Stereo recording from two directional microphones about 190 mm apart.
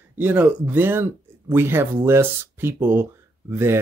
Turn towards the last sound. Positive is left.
turn(degrees=-10)  # may be behind; listen again after turning